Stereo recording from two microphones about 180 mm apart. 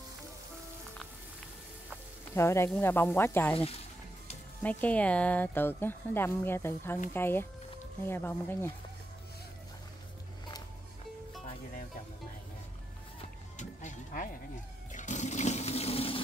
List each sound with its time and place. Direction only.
2.3 s speech: 15° left (ahead or behind)
3.5 s speech: 30° left (ahead or behind)
4.6 s speech: 10° left (ahead or behind)
13.6 s music: 40° left (ahead or behind)
14.9 s water: 45° left (ahead or behind)